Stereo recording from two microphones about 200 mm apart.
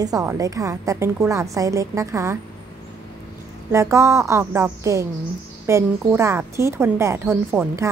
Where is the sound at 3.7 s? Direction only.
15° right (ahead or behind).